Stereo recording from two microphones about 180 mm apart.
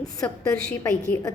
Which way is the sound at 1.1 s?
15° left (ahead or behind).